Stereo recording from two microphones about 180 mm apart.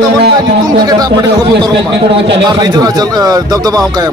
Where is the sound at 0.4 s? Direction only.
20° right (ahead or behind).